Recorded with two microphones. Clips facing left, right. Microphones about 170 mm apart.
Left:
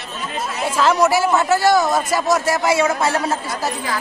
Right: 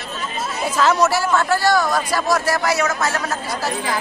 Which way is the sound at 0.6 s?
10° left (ahead or behind).